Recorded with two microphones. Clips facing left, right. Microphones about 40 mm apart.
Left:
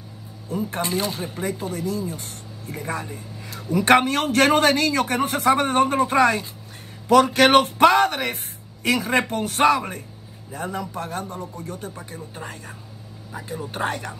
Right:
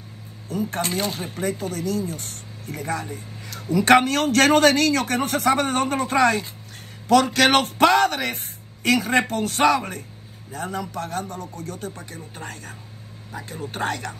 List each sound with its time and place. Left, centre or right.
0.5 s speech: left